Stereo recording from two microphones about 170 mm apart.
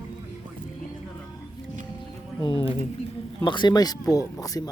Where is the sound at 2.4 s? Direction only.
30° left (ahead or behind).